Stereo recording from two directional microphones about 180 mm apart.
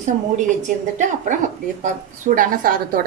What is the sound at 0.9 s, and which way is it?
A woman's voice, 45° right (ahead or behind).